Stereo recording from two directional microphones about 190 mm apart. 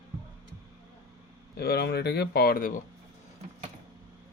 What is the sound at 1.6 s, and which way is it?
Speech, 55° left (ahead or behind).